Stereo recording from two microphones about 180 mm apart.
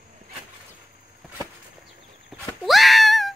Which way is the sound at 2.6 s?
Centre (ahead or behind).